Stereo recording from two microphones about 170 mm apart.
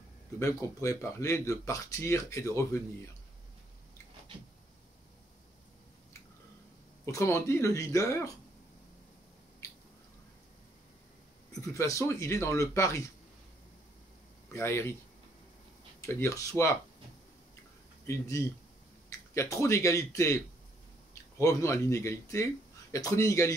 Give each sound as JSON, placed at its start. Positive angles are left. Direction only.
{"t": 0.4, "sound": "speech", "side_deg": 20}
{"t": 7.1, "sound": "speech", "side_deg": 20}
{"t": 11.7, "sound": "speech", "side_deg": 20}
{"t": 14.5, "sound": "speech", "side_deg": 15}
{"t": 16.0, "sound": "speech", "side_deg": 15}
{"t": 18.0, "sound": "speech", "side_deg": 15}